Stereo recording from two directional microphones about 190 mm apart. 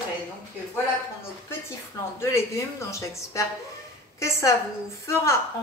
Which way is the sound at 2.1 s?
15° left (ahead or behind).